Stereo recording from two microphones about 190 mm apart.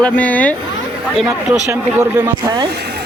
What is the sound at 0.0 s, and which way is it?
Speech, 5° left (ahead or behind).